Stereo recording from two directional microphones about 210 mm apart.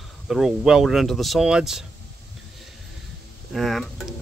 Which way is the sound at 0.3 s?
Centre (ahead or behind).